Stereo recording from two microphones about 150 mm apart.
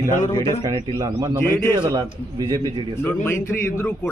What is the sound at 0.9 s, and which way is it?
Speech, 25° right (ahead or behind).